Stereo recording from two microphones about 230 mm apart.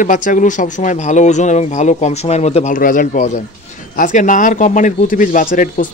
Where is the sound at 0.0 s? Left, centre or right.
Left.